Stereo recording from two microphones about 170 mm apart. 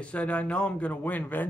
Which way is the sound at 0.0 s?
5° left (ahead or behind).